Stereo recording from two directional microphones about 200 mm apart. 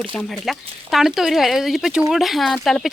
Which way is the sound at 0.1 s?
5° left (ahead or behind).